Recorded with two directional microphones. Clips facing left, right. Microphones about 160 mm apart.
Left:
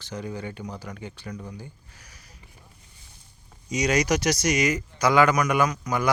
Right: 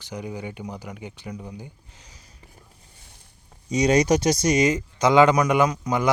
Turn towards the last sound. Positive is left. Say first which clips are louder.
# right 3 dB
turn(degrees=-20)  # may be behind; listen again after turning